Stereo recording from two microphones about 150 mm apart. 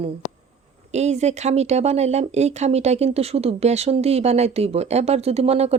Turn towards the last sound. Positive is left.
turn(degrees=-45)  # may be behind; listen again after turning